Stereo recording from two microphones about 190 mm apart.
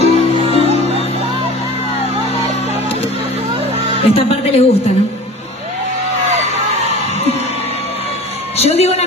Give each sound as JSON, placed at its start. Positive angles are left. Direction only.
{"t": 0.0, "sound": "music", "side_deg": 30}
{"t": 4.0, "sound": "a woman's voice", "side_deg": 30}
{"t": 8.5, "sound": "a sound", "side_deg": 35}